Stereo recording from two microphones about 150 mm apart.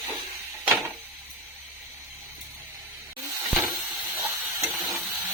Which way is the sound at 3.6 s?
10° right (ahead or behind).